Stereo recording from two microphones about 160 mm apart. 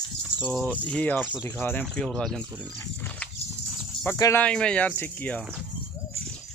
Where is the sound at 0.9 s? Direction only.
10° left (ahead or behind).